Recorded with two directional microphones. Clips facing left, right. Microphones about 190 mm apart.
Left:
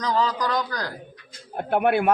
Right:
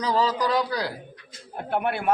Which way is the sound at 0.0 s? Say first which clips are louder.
Even; 10° right (ahead or behind).